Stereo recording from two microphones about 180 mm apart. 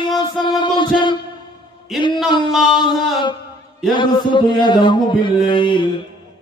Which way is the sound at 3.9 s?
25° left (ahead or behind).